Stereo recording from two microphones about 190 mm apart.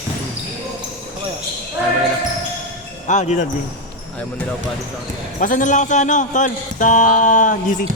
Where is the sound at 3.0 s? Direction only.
40° left (ahead or behind).